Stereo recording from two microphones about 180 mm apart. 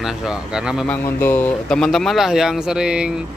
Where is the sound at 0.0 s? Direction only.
5° right (ahead or behind).